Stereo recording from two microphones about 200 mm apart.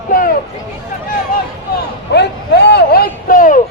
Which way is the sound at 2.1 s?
60° left (ahead or behind).